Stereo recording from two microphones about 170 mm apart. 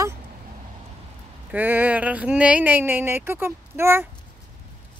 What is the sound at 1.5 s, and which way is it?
Speech, 10° right (ahead or behind).